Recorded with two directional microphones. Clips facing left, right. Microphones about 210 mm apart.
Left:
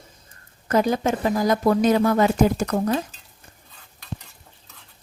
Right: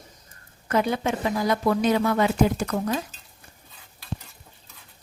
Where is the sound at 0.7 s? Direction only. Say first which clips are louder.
Left 3 dB; 40° left (ahead or behind).